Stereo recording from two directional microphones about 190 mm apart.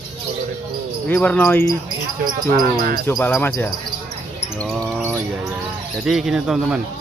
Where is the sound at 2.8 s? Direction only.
50° right (ahead or behind).